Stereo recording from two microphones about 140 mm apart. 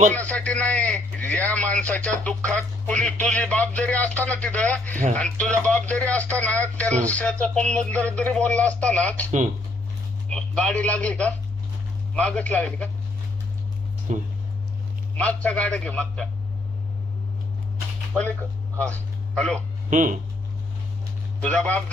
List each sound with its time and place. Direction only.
0.1 s a man's voice: 10° left (ahead or behind)
15.1 s a man's voice: 10° left (ahead or behind)
18.8 s a man's voice: 5° left (ahead or behind)
19.9 s speech: 60° right (ahead or behind)
21.4 s a man's voice: 10° left (ahead or behind)